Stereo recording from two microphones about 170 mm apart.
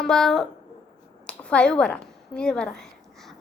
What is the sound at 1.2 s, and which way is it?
A woman's voice, 5° left (ahead or behind).